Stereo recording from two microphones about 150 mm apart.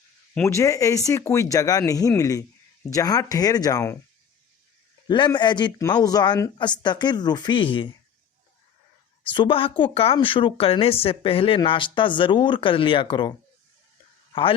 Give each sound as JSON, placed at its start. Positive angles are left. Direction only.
{"t": 0.4, "sound": "speech", "side_deg": 20}
{"t": 5.0, "sound": "speech", "side_deg": 30}
{"t": 9.3, "sound": "a woman's voice", "side_deg": 35}